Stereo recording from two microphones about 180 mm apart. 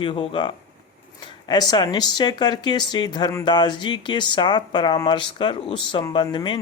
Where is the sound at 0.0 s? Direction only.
30° left (ahead or behind).